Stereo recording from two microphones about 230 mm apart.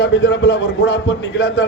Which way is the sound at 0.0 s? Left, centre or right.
Left.